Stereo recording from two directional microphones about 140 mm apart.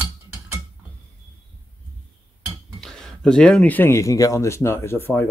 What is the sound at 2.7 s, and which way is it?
Speech, 5° left (ahead or behind).